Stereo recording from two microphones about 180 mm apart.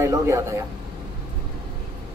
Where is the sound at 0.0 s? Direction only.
15° right (ahead or behind).